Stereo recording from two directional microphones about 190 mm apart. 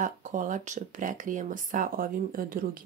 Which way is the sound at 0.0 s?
40° right (ahead or behind).